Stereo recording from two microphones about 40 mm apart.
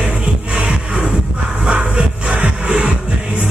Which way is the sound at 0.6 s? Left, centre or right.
Right.